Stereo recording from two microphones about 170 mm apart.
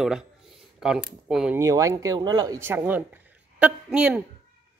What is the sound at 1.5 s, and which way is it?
Speech, 20° right (ahead or behind).